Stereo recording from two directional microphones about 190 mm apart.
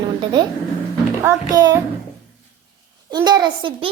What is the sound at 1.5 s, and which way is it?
Speech, 20° right (ahead or behind).